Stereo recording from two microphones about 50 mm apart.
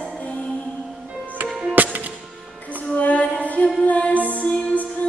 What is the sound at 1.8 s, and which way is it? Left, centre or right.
Music, right.